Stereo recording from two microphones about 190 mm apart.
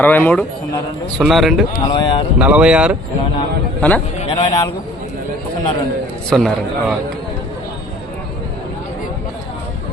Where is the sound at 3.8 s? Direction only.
10° left (ahead or behind).